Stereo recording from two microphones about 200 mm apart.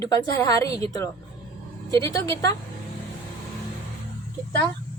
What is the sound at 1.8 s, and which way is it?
Speech, 15° left (ahead or behind).